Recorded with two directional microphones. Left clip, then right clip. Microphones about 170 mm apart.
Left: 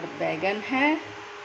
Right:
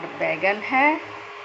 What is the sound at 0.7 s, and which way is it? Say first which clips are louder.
Speech: right 5 dB; 25° left (ahead or behind).